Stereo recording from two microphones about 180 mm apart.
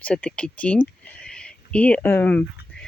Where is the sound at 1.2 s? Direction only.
5° left (ahead or behind).